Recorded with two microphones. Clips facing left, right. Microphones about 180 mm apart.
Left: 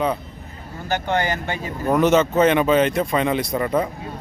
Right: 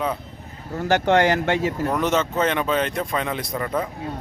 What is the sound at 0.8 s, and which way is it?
Speech, 80° right.